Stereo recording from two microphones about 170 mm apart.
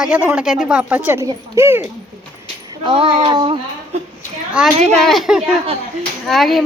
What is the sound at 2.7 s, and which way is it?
Speech, 30° right (ahead or behind).